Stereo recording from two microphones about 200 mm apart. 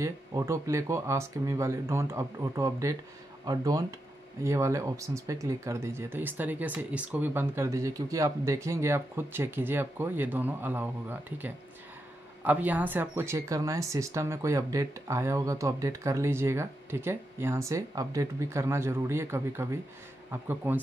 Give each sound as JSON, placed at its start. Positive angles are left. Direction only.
{"t": 0.0, "sound": "speech", "side_deg": -15}